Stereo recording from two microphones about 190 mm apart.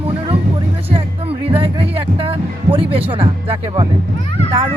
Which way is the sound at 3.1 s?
30° right (ahead or behind).